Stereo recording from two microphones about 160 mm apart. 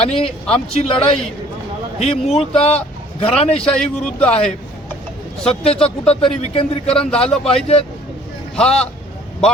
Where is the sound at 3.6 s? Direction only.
5° left (ahead or behind).